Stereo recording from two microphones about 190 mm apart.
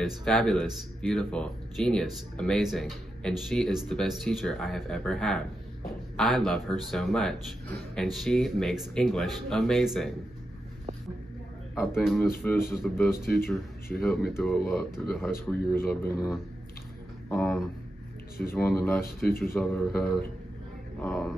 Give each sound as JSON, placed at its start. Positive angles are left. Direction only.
{"t": 0.0, "sound": "speech", "side_deg": 0}
{"t": 12.0, "sound": "speech", "side_deg": 0}
{"t": 12.9, "sound": "speech", "side_deg": 15}
{"t": 13.9, "sound": "speech", "side_deg": 0}
{"t": 19.0, "sound": "speech", "side_deg": 50}
{"t": 19.5, "sound": "speech", "side_deg": 10}